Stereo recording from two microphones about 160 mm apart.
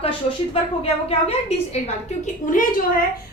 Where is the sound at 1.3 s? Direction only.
40° left (ahead or behind).